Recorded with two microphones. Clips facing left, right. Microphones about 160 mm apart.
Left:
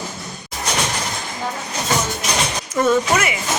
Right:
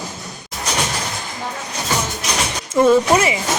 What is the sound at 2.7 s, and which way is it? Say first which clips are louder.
Speech: right 4 dB; 30° right (ahead or behind).